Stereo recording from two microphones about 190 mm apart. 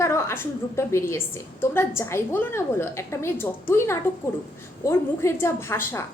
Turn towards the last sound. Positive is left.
turn(degrees=15)  # may be behind; listen again after turning